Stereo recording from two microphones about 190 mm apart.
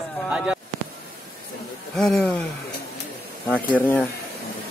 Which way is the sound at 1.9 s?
Centre (ahead or behind).